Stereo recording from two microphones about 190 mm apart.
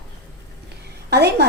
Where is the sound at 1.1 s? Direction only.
60° right (ahead or behind).